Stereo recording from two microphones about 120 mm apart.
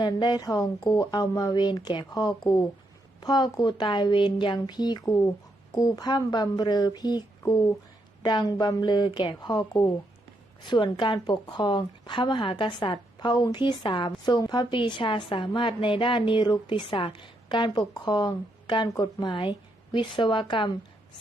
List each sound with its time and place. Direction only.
0.0 s a woman's voice: 35° left (ahead or behind)